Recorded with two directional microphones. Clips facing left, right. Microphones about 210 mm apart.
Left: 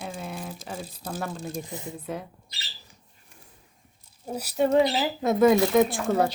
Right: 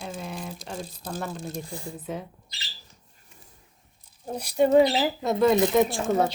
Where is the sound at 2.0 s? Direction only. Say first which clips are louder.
Right 1 dB; centre (ahead or behind).